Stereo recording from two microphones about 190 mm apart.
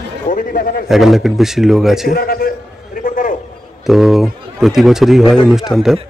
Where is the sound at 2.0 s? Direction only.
50° left (ahead or behind).